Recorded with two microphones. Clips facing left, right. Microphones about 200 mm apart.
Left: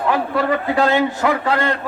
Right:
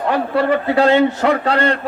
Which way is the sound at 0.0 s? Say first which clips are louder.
Right 2 dB; 35° right (ahead or behind).